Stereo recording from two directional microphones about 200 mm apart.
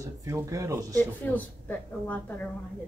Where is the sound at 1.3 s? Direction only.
10° left (ahead or behind).